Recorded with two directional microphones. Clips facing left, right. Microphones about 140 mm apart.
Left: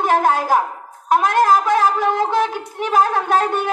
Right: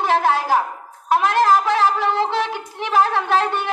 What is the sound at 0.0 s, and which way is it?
A woman's voice, 45° left (ahead or behind).